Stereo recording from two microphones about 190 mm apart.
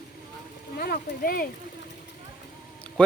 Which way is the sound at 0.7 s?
55° left (ahead or behind).